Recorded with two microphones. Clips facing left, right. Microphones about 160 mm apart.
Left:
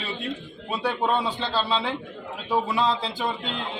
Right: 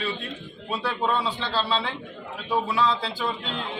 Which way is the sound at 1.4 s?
20° left (ahead or behind).